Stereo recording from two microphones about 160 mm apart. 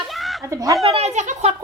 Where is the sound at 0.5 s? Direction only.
20° right (ahead or behind).